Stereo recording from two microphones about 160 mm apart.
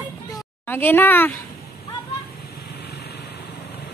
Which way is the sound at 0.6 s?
10° left (ahead or behind).